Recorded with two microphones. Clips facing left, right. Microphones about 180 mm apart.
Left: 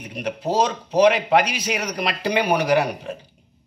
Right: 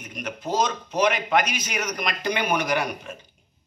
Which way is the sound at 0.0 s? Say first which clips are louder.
Left 6 dB; 30° left (ahead or behind).